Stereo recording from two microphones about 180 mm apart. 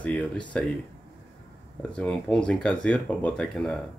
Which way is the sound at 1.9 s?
5° left (ahead or behind).